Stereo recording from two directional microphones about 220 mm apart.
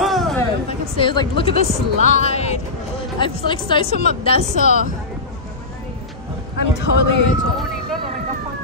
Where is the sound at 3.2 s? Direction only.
20° left (ahead or behind).